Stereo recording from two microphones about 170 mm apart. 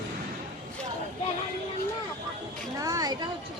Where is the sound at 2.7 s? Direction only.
20° right (ahead or behind).